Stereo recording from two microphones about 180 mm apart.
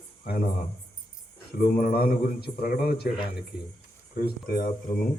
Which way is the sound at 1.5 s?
60° left (ahead or behind).